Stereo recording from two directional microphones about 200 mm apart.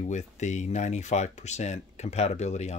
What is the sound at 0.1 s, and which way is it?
Speech, 35° left (ahead or behind).